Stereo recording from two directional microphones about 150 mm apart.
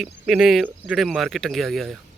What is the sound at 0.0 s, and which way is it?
Speech, 5° right (ahead or behind).